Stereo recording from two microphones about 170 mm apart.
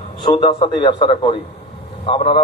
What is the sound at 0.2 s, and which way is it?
A man's voice, 25° left (ahead or behind).